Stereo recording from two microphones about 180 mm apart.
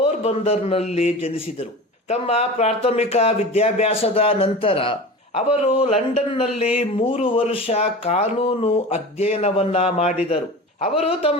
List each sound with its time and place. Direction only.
0.0 s speech: 35° left (ahead or behind)